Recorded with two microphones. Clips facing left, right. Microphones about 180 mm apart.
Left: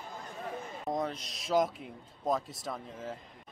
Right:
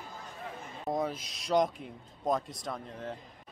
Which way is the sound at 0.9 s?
5° right (ahead or behind).